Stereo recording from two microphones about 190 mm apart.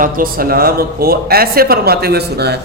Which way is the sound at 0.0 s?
50° right (ahead or behind).